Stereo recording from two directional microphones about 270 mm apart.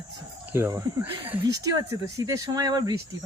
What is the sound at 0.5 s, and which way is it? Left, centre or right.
Speech, centre.